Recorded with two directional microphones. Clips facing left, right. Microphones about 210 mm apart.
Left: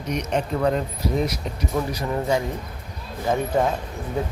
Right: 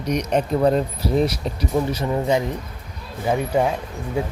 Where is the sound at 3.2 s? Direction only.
10° right (ahead or behind).